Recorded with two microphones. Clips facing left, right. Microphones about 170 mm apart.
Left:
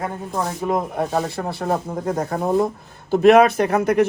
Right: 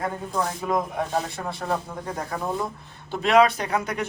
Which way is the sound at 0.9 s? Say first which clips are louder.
Left 5 dB; 40° left (ahead or behind).